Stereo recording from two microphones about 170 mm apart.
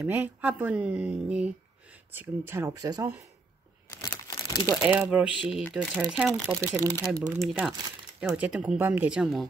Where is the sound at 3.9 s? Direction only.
20° left (ahead or behind).